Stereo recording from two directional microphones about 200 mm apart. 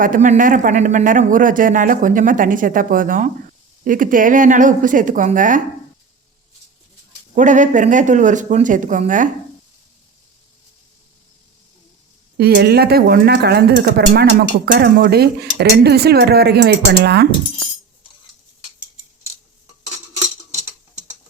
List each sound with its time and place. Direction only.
0.0 s speech: 40° right (ahead or behind)
7.3 s speech: 40° right (ahead or behind)
12.4 s speech: 55° right (ahead or behind)